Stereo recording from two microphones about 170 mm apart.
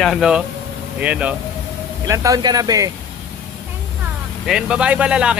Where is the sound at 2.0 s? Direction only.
20° right (ahead or behind).